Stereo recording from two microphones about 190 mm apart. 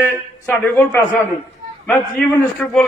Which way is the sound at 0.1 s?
10° left (ahead or behind).